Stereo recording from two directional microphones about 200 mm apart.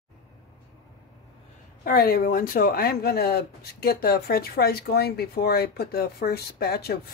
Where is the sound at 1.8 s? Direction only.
50° left (ahead or behind).